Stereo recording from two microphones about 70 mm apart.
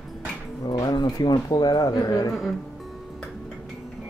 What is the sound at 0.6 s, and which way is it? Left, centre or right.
Speech, left.